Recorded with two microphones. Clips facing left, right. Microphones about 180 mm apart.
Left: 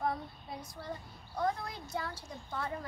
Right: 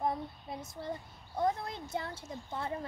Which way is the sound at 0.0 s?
20° right (ahead or behind).